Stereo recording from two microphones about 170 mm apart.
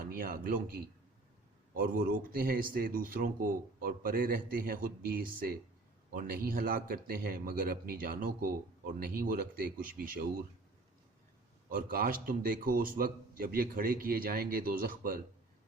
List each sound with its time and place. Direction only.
0.0 s a man's voice: 55° right (ahead or behind)
11.7 s a man's voice: 60° right (ahead or behind)